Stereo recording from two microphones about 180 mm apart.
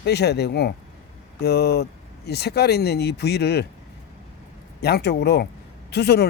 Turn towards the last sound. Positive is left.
turn(degrees=65)  # may be behind; listen again after turning